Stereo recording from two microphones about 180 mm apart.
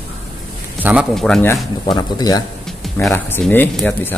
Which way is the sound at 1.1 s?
5° left (ahead or behind).